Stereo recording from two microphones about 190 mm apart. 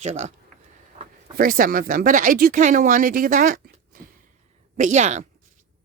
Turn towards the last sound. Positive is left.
turn(degrees=-40)  # may be behind; listen again after turning